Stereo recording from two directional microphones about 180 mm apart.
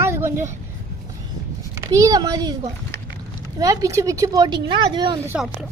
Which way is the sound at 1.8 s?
20° right (ahead or behind).